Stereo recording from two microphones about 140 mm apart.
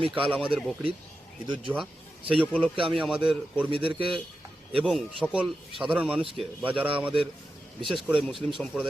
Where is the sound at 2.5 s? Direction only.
10° left (ahead or behind).